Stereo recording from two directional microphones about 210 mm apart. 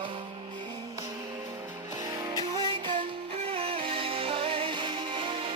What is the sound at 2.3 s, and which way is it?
Music, 20° right (ahead or behind).